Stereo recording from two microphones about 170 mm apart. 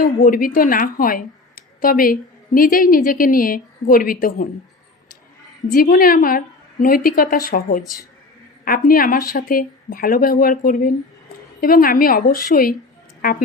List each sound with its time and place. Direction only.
0.0 s a woman's voice: 55° left (ahead or behind)
5.6 s a woman's voice: 55° left (ahead or behind)
8.6 s a woman's voice: 55° left (ahead or behind)